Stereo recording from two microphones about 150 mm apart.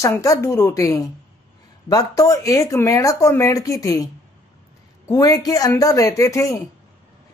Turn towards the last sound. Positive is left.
turn(degrees=20)  # may be behind; listen again after turning